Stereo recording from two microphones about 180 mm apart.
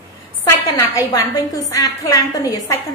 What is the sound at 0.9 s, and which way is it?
A woman's voice, 20° left (ahead or behind).